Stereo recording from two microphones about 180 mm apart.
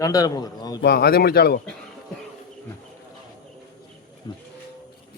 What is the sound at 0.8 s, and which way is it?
Speech, 60° left (ahead or behind).